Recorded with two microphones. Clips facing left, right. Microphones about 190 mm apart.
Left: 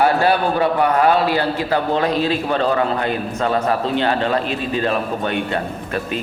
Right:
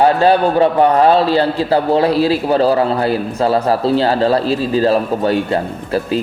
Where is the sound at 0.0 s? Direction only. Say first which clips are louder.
Right 5 dB; 25° right (ahead or behind).